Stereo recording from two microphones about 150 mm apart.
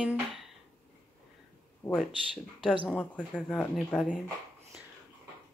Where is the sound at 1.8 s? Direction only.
5° left (ahead or behind).